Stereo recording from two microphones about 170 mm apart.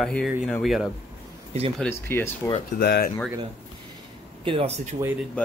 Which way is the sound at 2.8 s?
70° left (ahead or behind).